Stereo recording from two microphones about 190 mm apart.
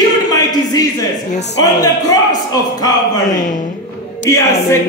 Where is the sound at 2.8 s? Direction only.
20° left (ahead or behind).